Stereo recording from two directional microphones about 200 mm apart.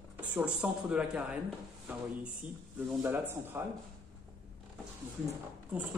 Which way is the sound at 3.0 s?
10° right (ahead or behind).